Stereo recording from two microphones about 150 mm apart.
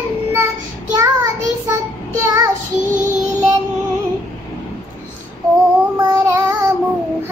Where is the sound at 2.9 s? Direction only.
55° right (ahead or behind).